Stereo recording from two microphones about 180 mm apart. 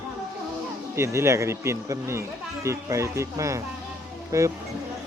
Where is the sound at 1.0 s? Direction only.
15° right (ahead or behind).